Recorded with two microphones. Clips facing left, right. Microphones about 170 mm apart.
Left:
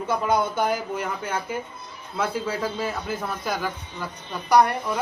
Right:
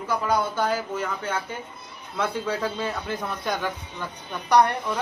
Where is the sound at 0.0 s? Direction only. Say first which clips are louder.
Left 2 dB; 20° left (ahead or behind).